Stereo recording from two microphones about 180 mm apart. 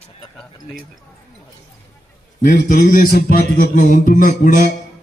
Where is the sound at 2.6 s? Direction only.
50° left (ahead or behind).